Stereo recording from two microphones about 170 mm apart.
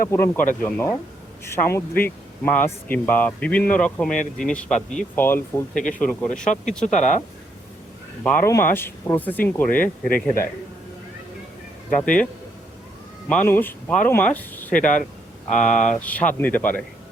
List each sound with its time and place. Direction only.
0.1 s speech: 15° left (ahead or behind)
6.8 s speech: 45° left (ahead or behind)
8.2 s speech: 10° left (ahead or behind)
10.1 s a man's voice: 60° left (ahead or behind)
11.9 s speech: 5° left (ahead or behind)